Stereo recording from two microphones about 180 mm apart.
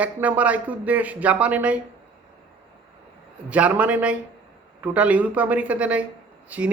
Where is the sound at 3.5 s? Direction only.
10° right (ahead or behind).